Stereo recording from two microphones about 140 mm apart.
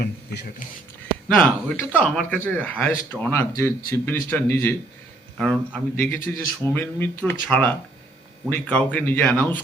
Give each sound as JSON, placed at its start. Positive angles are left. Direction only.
{"t": 1.4, "sound": "speech", "side_deg": 10}